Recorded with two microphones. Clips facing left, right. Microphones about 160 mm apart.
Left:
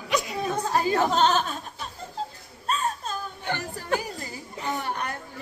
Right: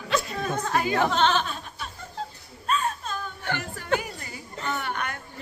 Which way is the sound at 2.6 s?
40° left (ahead or behind).